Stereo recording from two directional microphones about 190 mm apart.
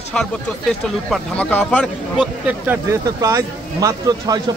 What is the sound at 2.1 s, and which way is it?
Speech, 10° right (ahead or behind).